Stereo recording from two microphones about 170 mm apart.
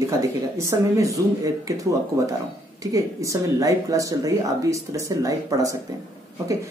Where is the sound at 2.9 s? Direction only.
20° right (ahead or behind).